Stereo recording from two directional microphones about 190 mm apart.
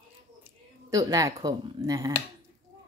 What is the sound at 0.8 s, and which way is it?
Speech, 20° right (ahead or behind).